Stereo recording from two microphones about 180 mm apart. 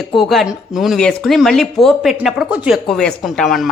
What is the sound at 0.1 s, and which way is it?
Speech, centre (ahead or behind).